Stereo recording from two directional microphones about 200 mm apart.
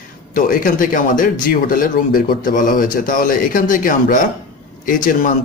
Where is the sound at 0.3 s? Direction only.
45° left (ahead or behind).